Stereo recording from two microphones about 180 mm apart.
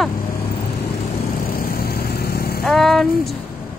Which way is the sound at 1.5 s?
55° left (ahead or behind).